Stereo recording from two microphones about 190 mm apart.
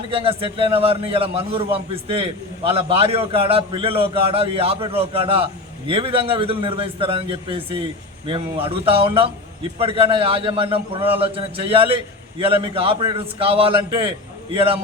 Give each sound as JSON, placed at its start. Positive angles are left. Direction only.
{"t": 0.1, "sound": "a man's voice", "side_deg": -30}